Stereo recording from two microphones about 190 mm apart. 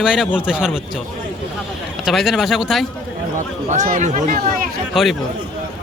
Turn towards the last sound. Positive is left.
turn(degrees=0)  # may be behind; listen again after turning